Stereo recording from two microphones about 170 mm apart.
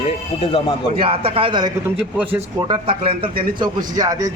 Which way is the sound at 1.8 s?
10° right (ahead or behind).